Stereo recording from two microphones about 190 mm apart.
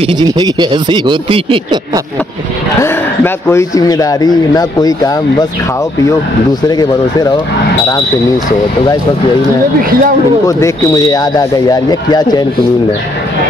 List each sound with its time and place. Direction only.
0.0 s speech: 25° right (ahead or behind)
3.4 s speech: 15° left (ahead or behind)
6.7 s speech: 20° left (ahead or behind)
9.8 s speech: 50° right (ahead or behind)
10.4 s speech: 15° left (ahead or behind)